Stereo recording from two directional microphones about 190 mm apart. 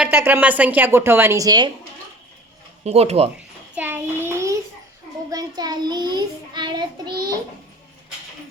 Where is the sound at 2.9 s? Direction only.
30° right (ahead or behind).